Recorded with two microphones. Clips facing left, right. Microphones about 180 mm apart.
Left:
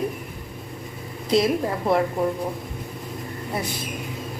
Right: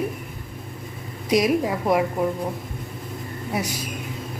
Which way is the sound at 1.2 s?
15° right (ahead or behind).